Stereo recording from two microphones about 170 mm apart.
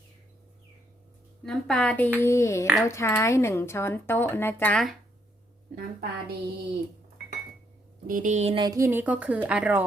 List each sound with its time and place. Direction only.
1.5 s speech: 5° left (ahead or behind)
5.7 s a woman's voice: 60° right (ahead or behind)
8.0 s speech: 50° right (ahead or behind)
8.6 s a woman's voice: 20° right (ahead or behind)